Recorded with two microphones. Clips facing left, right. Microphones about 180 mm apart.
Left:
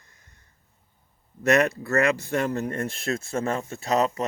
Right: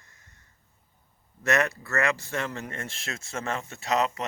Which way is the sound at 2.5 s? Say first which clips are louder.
Left 9 dB; 40° left (ahead or behind).